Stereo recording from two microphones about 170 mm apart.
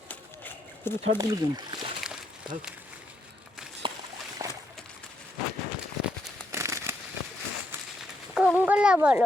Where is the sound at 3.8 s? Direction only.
30° right (ahead or behind).